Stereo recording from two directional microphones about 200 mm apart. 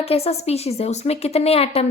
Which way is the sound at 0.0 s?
30° left (ahead or behind).